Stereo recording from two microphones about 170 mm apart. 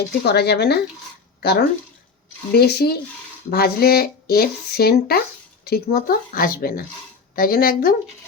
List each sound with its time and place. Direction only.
0.1 s speech: 75° left (ahead or behind)